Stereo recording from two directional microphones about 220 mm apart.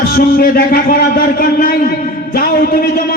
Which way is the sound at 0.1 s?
40° left (ahead or behind).